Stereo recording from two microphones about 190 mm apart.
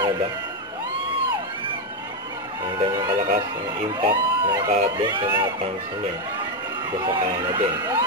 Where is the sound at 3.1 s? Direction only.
45° right (ahead or behind).